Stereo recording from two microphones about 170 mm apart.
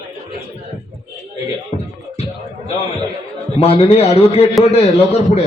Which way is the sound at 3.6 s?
35° left (ahead or behind).